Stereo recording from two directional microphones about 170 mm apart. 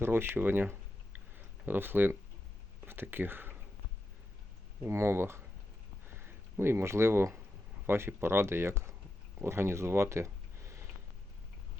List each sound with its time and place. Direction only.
0.0 s speech: 15° right (ahead or behind)
4.8 s speech: 15° right (ahead or behind)